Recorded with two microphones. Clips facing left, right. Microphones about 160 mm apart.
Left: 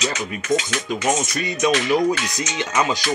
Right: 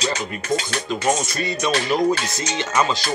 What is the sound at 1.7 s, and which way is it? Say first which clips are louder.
Speech: even; 35° right (ahead or behind).